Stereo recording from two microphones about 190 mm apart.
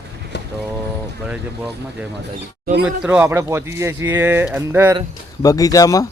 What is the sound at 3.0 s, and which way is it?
Speech, 10° right (ahead or behind).